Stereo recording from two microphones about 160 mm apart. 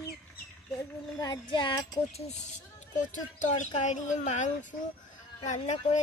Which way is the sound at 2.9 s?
50° left (ahead or behind).